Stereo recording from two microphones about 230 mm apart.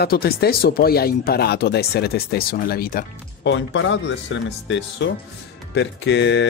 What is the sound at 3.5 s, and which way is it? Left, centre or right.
Speech, left.